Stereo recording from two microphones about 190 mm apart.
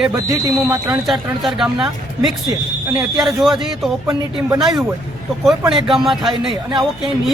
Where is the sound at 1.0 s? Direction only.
Centre (ahead or behind).